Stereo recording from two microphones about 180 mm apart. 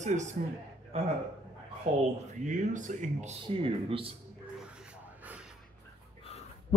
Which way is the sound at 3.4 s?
30° right (ahead or behind).